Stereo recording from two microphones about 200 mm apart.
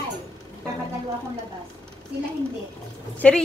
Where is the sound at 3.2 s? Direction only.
5° left (ahead or behind).